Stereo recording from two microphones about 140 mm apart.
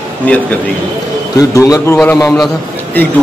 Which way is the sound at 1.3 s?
25° left (ahead or behind).